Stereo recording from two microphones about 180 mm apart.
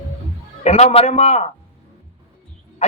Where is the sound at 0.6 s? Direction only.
35° left (ahead or behind).